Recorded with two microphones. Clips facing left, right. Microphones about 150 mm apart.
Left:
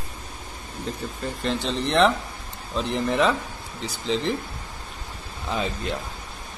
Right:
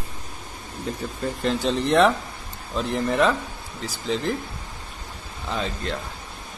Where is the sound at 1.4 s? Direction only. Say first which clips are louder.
Right 3 dB; centre (ahead or behind).